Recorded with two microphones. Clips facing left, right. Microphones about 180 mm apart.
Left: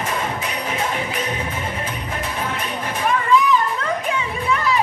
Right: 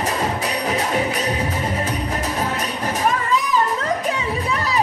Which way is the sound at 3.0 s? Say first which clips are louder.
Left 5 dB; 40° right (ahead or behind).